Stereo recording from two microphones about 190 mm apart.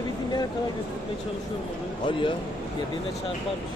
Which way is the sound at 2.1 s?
25° left (ahead or behind).